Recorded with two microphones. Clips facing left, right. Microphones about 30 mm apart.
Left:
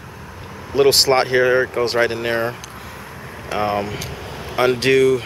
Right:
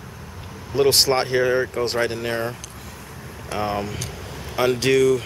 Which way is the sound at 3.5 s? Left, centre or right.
Centre.